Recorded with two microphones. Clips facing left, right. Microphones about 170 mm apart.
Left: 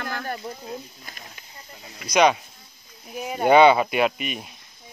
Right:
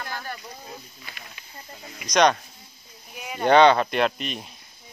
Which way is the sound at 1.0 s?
45° left (ahead or behind).